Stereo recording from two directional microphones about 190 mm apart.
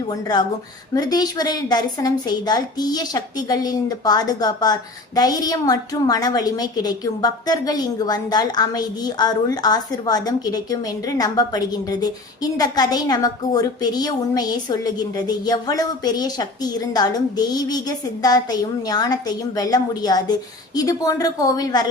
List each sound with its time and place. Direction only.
0.1 s a woman's voice: 20° left (ahead or behind)